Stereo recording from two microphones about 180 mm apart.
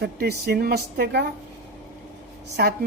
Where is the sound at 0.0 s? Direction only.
60° right (ahead or behind).